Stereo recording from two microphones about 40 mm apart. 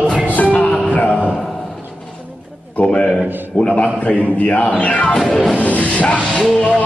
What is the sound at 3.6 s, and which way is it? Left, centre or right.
Speech, left.